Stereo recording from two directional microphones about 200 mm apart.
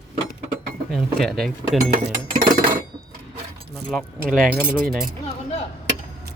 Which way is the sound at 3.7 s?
Centre (ahead or behind).